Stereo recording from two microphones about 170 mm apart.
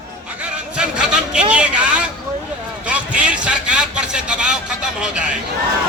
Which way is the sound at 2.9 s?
5° right (ahead or behind).